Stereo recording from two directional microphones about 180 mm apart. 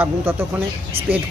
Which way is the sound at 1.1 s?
30° right (ahead or behind).